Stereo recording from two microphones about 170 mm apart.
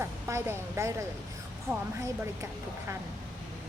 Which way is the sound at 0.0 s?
15° right (ahead or behind).